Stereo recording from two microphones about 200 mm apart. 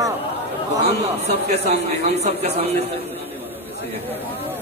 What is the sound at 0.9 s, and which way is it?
A man's voice, 30° right (ahead or behind).